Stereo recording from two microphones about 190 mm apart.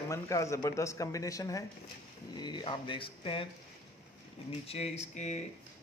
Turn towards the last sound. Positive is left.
turn(degrees=35)  # may be behind; listen again after turning